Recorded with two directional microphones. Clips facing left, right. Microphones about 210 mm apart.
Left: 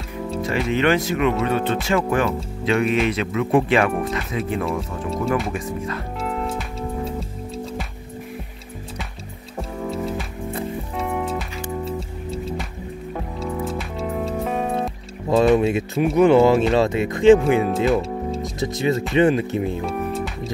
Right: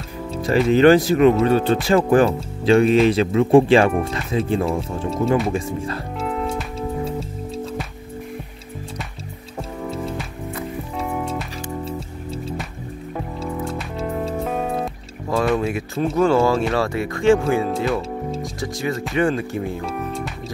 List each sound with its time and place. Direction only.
0.4 s speech: 35° right (ahead or behind)
6.1 s music: centre (ahead or behind)
9.6 s music: centre (ahead or behind)
15.2 s speech: 20° left (ahead or behind)
19.9 s music: centre (ahead or behind)